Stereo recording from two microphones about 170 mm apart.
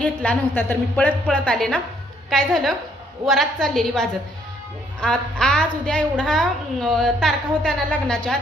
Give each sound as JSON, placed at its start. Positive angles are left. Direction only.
{"t": 0.0, "sound": "a woman's voice", "side_deg": 5}